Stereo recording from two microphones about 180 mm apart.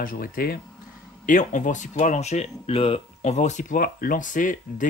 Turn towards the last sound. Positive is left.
turn(degrees=45)  # may be behind; listen again after turning